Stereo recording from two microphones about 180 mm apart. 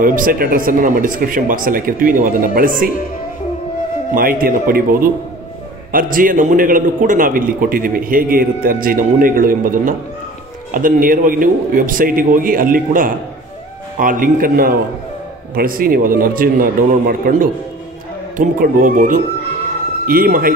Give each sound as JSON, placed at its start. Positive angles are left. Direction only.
{"t": 0.0, "sound": "speech", "side_deg": -50}
{"t": 4.1, "sound": "speech", "side_deg": -50}